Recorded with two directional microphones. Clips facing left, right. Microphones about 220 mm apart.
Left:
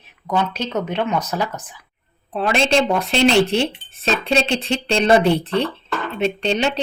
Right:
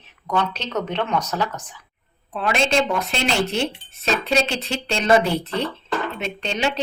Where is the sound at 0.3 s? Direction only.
10° left (ahead or behind).